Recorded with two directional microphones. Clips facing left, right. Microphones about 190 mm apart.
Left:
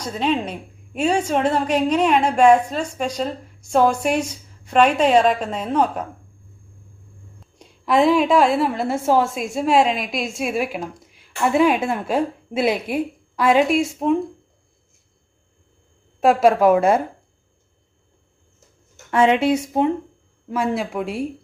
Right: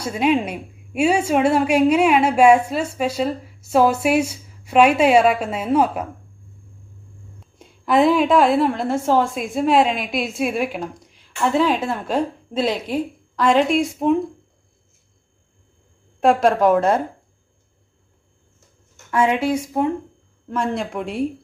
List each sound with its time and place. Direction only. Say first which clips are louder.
0.0 s a woman's voice: right 3 dB; 10° right (ahead or behind)
7.3 s a woman's voice: right 1 dB; centre (ahead or behind)
16.2 s a woman's voice: left 1 dB; 5° left (ahead or behind)
19.1 s speech: left 2 dB; 25° left (ahead or behind)
20.5 s a woman's voice: left 1 dB; 5° left (ahead or behind)